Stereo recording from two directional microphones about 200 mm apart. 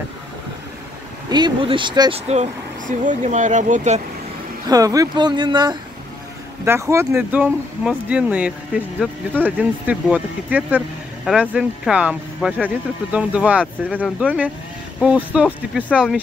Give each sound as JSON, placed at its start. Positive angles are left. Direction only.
{"t": 1.3, "sound": "speech", "side_deg": -25}
{"t": 4.6, "sound": "speech", "side_deg": -15}
{"t": 9.0, "sound": "speech", "side_deg": 5}
{"t": 9.6, "sound": "speech", "side_deg": -5}